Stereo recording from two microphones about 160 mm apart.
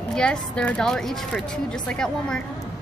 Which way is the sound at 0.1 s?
5° left (ahead or behind).